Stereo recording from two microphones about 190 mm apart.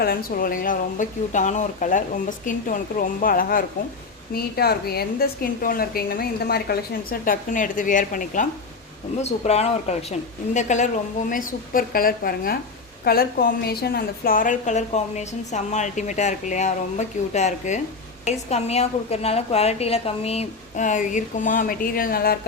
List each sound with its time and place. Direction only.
0.0 s a woman's voice: 50° left (ahead or behind)